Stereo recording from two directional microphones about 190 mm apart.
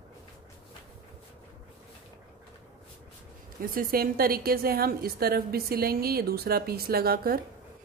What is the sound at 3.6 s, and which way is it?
A woman's voice, 50° right (ahead or behind).